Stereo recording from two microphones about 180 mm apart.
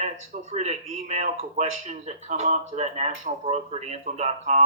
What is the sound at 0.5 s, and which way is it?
Speech, 40° right (ahead or behind).